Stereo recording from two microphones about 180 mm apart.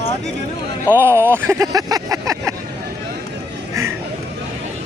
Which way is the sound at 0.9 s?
15° right (ahead or behind).